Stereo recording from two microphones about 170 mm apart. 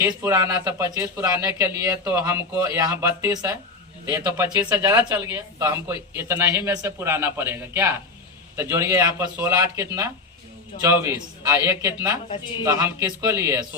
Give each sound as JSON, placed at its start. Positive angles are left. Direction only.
{"t": 0.0, "sound": "speech", "side_deg": -15}